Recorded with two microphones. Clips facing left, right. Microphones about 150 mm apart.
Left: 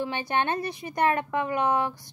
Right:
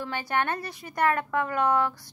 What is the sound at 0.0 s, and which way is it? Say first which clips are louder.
A woman's voice: left 1 dB; 20° left (ahead or behind).